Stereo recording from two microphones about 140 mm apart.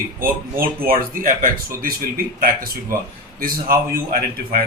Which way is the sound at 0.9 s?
85° right.